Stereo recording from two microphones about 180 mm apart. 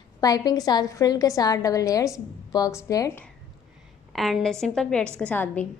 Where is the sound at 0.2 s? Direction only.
20° left (ahead or behind).